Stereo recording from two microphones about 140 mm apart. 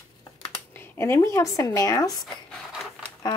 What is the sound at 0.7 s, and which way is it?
Speech, 15° left (ahead or behind).